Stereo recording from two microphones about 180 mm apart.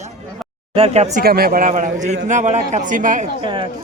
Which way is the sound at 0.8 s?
35° right (ahead or behind).